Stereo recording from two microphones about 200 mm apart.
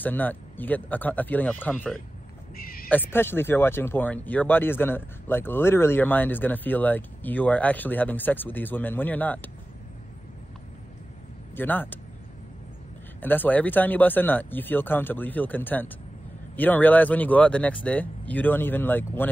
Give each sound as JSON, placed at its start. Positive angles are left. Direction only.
{"t": 0.0, "sound": "speech", "side_deg": 10}
{"t": 2.5, "sound": "owl", "side_deg": 45}
{"t": 2.9, "sound": "speech", "side_deg": 10}
{"t": 11.5, "sound": "speech", "side_deg": 10}
{"t": 13.2, "sound": "speech", "side_deg": 10}